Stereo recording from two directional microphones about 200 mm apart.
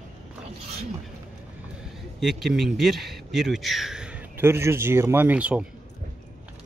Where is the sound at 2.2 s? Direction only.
Centre (ahead or behind).